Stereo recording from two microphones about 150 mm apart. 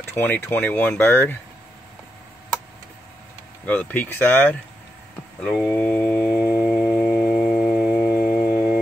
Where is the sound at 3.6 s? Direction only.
10° left (ahead or behind).